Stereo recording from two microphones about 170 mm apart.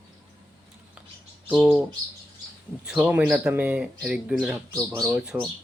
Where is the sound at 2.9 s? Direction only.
5° right (ahead or behind).